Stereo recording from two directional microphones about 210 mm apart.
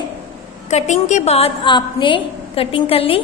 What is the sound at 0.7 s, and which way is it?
A woman's voice, 30° left (ahead or behind).